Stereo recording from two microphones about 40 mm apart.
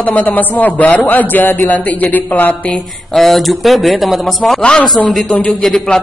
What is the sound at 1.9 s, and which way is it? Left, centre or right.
Speech, left.